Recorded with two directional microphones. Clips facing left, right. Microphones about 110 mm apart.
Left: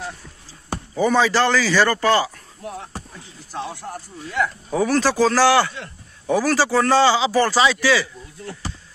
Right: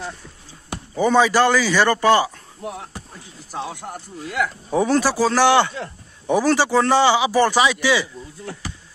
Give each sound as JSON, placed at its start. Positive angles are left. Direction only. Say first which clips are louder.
{"t": 0.9, "sound": "a man's voice", "louder": "right 2 dB", "side_deg": -15}
{"t": 3.7, "sound": "a man's voice", "louder": "even", "side_deg": -20}